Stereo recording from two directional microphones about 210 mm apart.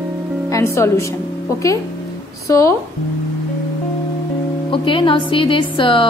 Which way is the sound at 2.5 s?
15° left (ahead or behind).